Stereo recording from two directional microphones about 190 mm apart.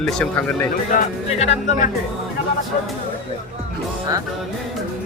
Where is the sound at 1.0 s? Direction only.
40° left (ahead or behind).